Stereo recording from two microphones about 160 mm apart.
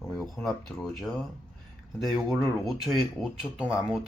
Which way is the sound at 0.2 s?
Centre (ahead or behind).